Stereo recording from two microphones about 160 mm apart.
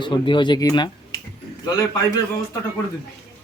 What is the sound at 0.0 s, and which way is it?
Speech, 30° left (ahead or behind).